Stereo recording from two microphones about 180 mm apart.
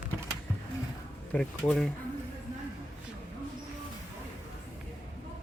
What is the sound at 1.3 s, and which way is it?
Speech, 5° left (ahead or behind).